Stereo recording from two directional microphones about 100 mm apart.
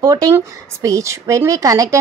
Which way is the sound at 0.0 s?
40° right (ahead or behind).